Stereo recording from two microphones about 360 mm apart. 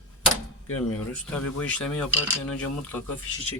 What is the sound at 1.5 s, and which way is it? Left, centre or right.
Speech, centre.